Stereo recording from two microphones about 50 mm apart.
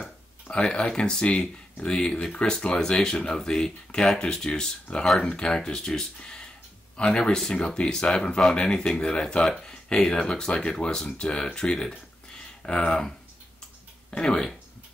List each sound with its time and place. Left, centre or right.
0.5 s speech: centre
14.2 s speech: centre